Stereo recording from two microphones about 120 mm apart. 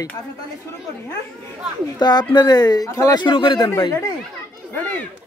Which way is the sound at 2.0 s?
35° left (ahead or behind).